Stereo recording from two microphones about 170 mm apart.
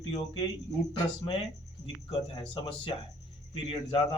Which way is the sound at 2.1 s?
30° left (ahead or behind).